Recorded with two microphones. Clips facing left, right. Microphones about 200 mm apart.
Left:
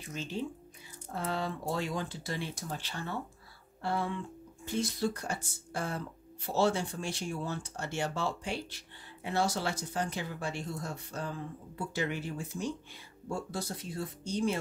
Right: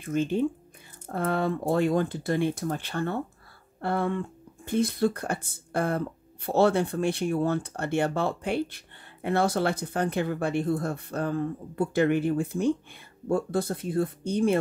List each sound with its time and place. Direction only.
0.0 s speech: 55° right (ahead or behind)